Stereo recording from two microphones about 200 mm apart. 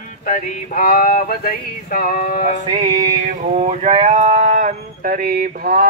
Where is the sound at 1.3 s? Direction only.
45° left (ahead or behind).